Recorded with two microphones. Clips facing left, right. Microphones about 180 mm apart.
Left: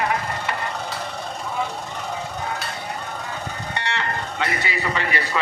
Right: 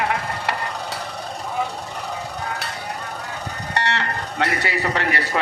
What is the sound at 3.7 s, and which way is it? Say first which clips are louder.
Livestock: right 3 dB; 70° right (ahead or behind).